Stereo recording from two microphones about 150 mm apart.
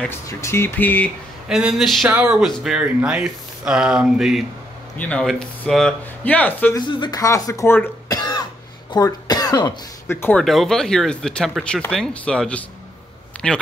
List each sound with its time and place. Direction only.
0.1 s speech: 20° left (ahead or behind)
1.5 s speech: 5° right (ahead or behind)
4.9 s speech: 10° left (ahead or behind)
6.7 s speech: 30° left (ahead or behind)
8.2 s cough: 25° left (ahead or behind)
8.9 s speech: 25° left (ahead or behind)
10.0 s speech: 15° left (ahead or behind)
10.4 s speech: centre (ahead or behind)